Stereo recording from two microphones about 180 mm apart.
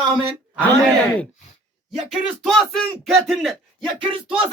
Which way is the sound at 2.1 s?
Centre (ahead or behind).